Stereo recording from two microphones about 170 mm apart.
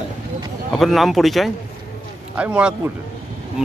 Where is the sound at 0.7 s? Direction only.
Centre (ahead or behind).